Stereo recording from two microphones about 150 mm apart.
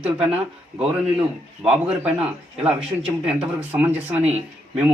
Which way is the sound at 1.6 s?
10° right (ahead or behind).